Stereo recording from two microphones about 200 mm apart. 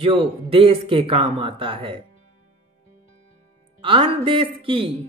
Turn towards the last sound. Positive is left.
turn(degrees=-25)  # may be behind; listen again after turning